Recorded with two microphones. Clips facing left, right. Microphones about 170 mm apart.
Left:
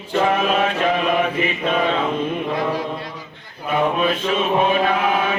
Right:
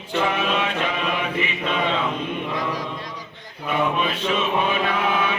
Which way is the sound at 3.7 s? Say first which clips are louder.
Left 4 dB; 45° left (ahead or behind).